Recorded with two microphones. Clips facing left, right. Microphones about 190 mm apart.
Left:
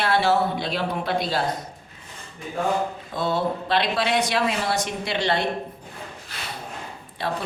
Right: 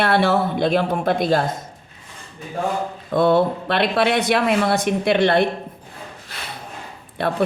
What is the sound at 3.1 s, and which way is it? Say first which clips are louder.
A woman's voice: right 10 dB; 60° right (ahead or behind).